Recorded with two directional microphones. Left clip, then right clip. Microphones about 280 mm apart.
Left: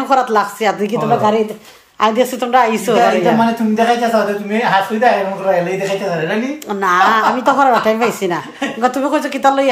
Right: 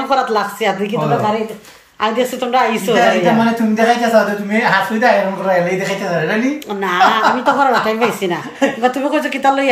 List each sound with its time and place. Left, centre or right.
0.1 s a woman's voice: centre
6.8 s a woman's voice: centre